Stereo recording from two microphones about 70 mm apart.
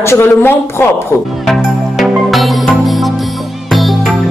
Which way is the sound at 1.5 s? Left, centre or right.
Centre.